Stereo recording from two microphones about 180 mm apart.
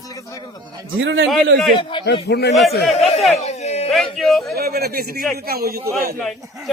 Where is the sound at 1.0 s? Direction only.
80° right.